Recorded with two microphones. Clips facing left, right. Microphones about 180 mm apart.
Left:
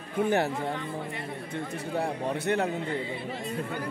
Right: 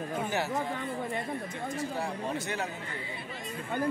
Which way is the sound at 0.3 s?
55° left (ahead or behind).